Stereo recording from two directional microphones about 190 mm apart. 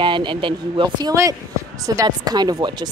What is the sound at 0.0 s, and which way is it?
Speech, 25° right (ahead or behind).